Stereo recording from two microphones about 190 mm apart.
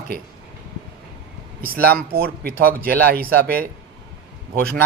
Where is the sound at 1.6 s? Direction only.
55° right (ahead or behind).